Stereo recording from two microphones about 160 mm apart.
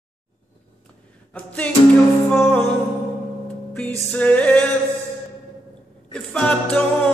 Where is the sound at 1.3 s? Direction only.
10° left (ahead or behind).